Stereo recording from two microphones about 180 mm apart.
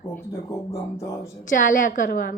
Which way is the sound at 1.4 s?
45° left (ahead or behind).